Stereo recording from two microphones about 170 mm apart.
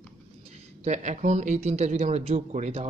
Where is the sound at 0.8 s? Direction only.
45° right (ahead or behind).